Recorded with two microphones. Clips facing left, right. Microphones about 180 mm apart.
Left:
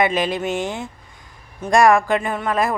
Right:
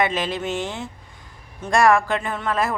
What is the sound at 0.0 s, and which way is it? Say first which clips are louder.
Speech: left 3 dB; 15° left (ahead or behind).